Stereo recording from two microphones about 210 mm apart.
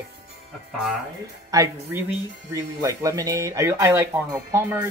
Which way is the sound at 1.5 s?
15° right (ahead or behind).